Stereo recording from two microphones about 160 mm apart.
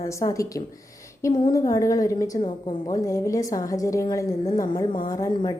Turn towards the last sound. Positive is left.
turn(degrees=25)  # may be behind; listen again after turning